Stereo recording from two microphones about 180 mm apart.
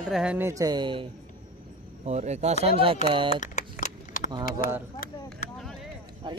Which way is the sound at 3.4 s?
45° left (ahead or behind).